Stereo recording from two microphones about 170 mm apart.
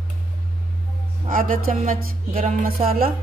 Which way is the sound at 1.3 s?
55° right (ahead or behind).